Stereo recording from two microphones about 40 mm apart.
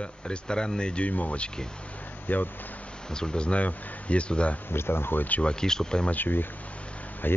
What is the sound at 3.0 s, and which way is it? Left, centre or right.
Speech, centre.